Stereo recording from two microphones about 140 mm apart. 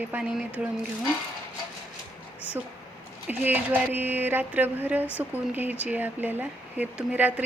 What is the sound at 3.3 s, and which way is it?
Speech, 15° right (ahead or behind).